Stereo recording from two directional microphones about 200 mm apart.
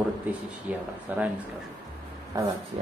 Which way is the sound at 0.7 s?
5° right (ahead or behind).